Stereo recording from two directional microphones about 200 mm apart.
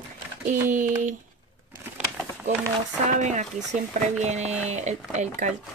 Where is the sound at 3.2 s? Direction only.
35° right (ahead or behind).